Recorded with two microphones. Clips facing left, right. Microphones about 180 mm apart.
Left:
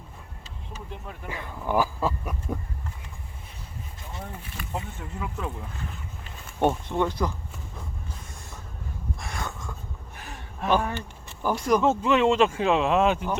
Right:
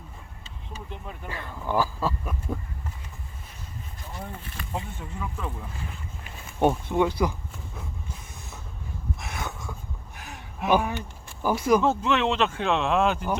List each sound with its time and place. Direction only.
0.9 s speech: centre (ahead or behind)
1.3 s speech: 15° left (ahead or behind)
4.2 s speech: centre (ahead or behind)
6.6 s speech: 10° right (ahead or behind)
9.3 s a sound: 5° right (ahead or behind)
10.7 s speech: 10° right (ahead or behind); by 13.3 s 5° left (ahead or behind)